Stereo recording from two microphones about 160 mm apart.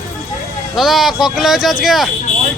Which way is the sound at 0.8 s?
Centre (ahead or behind).